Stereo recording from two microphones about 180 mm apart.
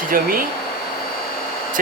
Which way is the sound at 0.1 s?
55° right (ahead or behind).